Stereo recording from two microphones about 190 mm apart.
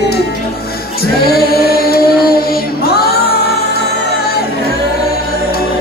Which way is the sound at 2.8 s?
55° left (ahead or behind).